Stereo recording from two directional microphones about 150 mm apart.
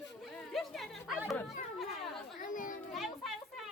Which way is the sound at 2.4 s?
60° left (ahead or behind).